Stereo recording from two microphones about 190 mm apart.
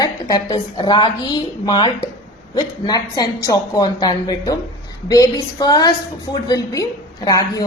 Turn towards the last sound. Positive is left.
turn(degrees=20)  # may be behind; listen again after turning